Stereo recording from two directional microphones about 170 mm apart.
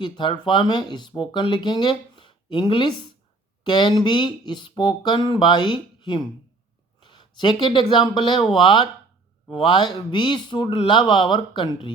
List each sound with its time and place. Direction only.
0.0 s speech: 30° left (ahead or behind)